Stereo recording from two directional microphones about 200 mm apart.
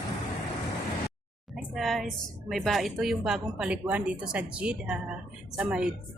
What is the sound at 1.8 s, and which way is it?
Speech, centre (ahead or behind).